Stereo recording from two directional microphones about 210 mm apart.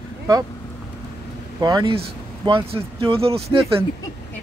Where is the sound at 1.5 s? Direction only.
20° right (ahead or behind).